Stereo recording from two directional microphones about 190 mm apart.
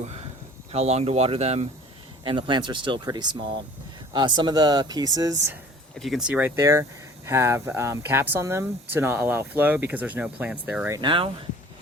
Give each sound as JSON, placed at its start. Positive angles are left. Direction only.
{"t": 0.7, "sound": "speech", "side_deg": -35}
{"t": 6.0, "sound": "speech", "side_deg": 0}
{"t": 10.8, "sound": "speech", "side_deg": -20}